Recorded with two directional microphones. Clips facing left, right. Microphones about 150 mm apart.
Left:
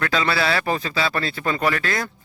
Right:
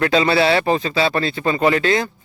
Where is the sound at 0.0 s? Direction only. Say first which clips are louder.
Right 6 dB; 30° right (ahead or behind).